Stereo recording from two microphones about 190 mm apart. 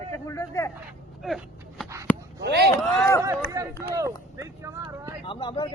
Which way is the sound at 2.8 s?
Centre (ahead or behind).